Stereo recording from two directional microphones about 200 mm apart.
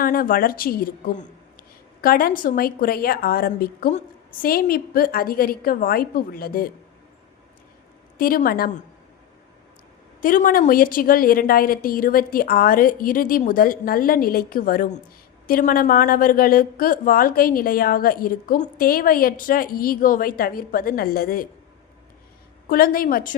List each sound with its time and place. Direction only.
0.0 s a woman's voice: 45° left (ahead or behind)
8.2 s a woman's voice: 45° left (ahead or behind)
10.2 s a woman's voice: 45° left (ahead or behind)
22.7 s a woman's voice: 45° left (ahead or behind)